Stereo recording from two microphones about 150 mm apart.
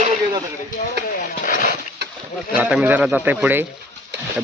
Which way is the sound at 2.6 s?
10° right (ahead or behind).